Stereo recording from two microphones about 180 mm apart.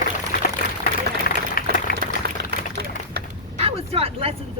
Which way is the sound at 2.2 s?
65° right (ahead or behind).